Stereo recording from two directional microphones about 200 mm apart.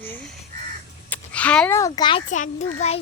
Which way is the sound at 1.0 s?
5° left (ahead or behind).